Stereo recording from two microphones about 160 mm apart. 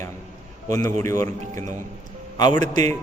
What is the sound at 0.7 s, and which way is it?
Speech, 20° left (ahead or behind).